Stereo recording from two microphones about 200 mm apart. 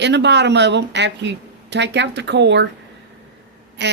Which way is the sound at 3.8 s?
60° right (ahead or behind).